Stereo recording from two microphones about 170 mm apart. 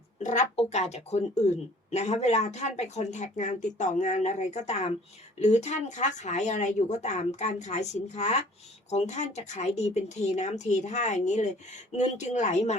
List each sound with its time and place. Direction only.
0.2 s speech: 45° left (ahead or behind)